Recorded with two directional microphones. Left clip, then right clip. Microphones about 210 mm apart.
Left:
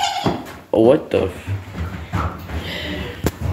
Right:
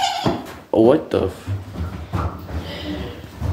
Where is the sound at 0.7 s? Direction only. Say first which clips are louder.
Left 1 dB; 10° right (ahead or behind).